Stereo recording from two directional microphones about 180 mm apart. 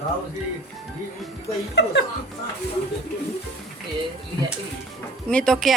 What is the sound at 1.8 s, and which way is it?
Speech, 75° left (ahead or behind).